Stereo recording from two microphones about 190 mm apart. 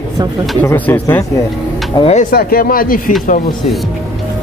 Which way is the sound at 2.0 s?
35° left (ahead or behind).